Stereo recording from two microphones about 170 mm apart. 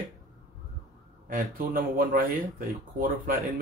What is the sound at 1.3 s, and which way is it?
A man's voice, 55° right (ahead or behind).